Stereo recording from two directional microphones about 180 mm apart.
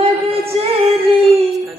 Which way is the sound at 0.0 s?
30° right (ahead or behind).